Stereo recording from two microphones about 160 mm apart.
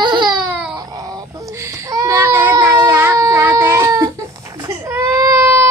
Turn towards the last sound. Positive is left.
turn(degrees=-15)  # may be behind; listen again after turning